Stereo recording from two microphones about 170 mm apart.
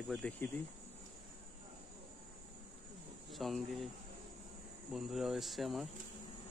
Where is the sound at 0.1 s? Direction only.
5° left (ahead or behind).